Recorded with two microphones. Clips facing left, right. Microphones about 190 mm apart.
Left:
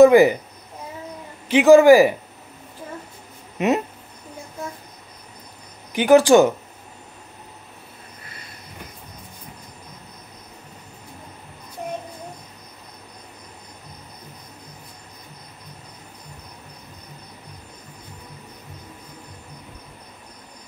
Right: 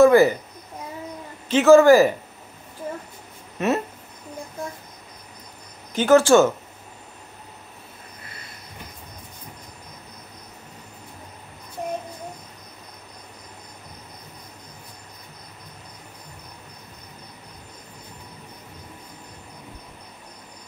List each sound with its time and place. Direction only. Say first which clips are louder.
0.0 s speech: left 3 dB; 15° left (ahead or behind)
1.5 s a man's voice: left 2 dB; 15° left (ahead or behind)
3.5 s speech: left 2 dB; 15° left (ahead or behind)
5.9 s a man's voice: left 2 dB; 15° left (ahead or behind)